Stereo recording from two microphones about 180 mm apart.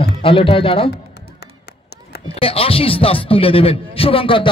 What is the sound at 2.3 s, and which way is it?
A man's voice, 30° left (ahead or behind).